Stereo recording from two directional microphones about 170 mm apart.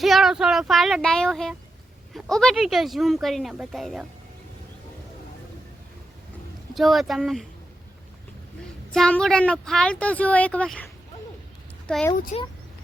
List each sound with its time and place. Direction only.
0.0 s speech: centre (ahead or behind)
6.7 s speech: centre (ahead or behind)
8.9 s speech: 5° left (ahead or behind)
12.3 s speech: 45° left (ahead or behind)